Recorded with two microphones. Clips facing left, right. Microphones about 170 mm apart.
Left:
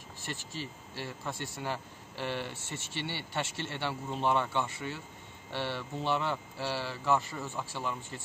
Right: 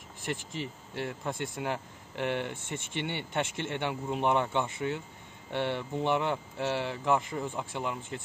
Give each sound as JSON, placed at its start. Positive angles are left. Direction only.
{"t": 0.2, "sound": "speech", "side_deg": -20}